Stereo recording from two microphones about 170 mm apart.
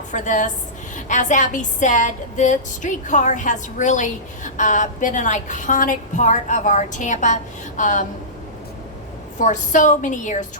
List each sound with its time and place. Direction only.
0.1 s a woman's voice: 50° left (ahead or behind)
9.4 s a woman's voice: 45° left (ahead or behind)